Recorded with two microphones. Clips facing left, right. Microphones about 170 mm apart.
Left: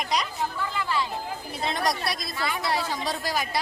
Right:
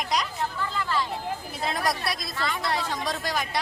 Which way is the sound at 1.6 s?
Centre (ahead or behind).